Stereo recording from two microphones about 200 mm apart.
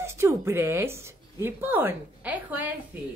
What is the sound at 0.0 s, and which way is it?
A woman's voice, 15° right (ahead or behind).